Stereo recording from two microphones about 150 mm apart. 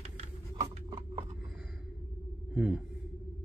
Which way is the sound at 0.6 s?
25° right (ahead or behind).